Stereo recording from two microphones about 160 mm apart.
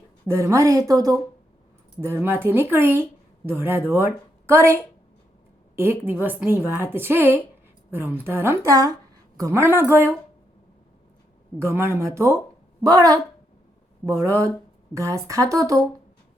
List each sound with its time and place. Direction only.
0.3 s a woman's voice: 20° right (ahead or behind)
11.6 s a woman's voice: 15° right (ahead or behind)